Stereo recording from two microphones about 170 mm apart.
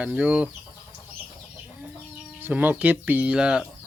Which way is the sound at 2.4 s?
10° right (ahead or behind).